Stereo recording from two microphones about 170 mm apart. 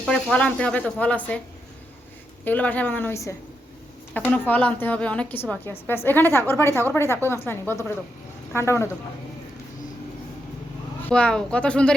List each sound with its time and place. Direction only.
0.1 s a woman's voice: 5° left (ahead or behind)
2.4 s a woman's voice: 10° left (ahead or behind)
11.1 s speech: 5° left (ahead or behind)